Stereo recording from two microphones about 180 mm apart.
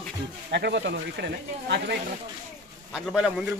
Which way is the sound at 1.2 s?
90° right.